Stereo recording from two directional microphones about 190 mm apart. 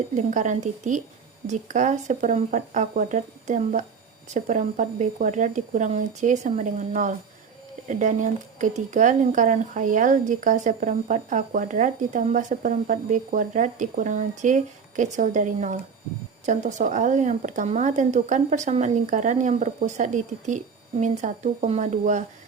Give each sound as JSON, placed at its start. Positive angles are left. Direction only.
{"t": 0.2, "sound": "speech", "side_deg": -40}